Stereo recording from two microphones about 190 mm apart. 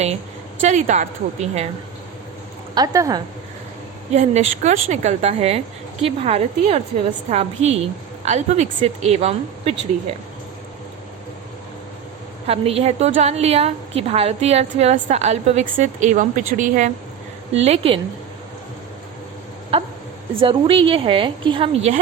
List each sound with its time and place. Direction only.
0.6 s a woman's voice: 40° right (ahead or behind)
2.7 s a woman's voice: 20° right (ahead or behind)
4.1 s a woman's voice: 40° right (ahead or behind)
12.5 s a woman's voice: 30° right (ahead or behind)
19.7 s a woman's voice: 30° right (ahead or behind)